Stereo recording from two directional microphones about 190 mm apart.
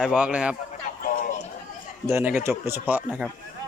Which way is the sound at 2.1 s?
10° right (ahead or behind).